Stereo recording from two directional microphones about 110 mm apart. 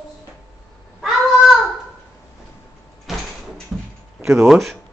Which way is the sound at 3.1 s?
Centre (ahead or behind).